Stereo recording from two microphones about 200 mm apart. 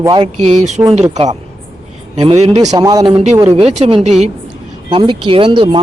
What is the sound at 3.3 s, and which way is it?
Speech, 15° right (ahead or behind).